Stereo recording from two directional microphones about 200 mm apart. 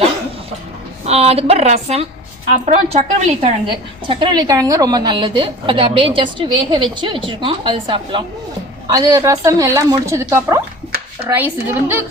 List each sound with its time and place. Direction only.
1.0 s a woman's voice: 30° right (ahead or behind); by 12.0 s 10° right (ahead or behind)